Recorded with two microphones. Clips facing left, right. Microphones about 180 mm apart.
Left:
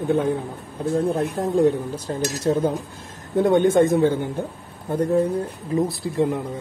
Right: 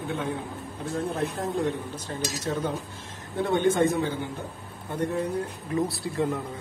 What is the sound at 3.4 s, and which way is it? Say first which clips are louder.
Speech: left 6 dB; 45° left (ahead or behind).